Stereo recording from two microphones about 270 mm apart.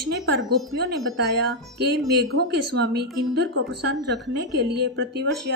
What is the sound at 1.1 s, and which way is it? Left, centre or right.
A woman's voice, right.